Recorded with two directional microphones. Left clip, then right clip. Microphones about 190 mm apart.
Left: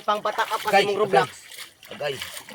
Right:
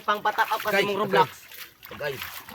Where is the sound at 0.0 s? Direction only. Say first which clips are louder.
Even; 20° right (ahead or behind).